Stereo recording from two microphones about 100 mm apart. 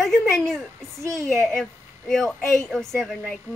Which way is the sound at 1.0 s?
30° right (ahead or behind).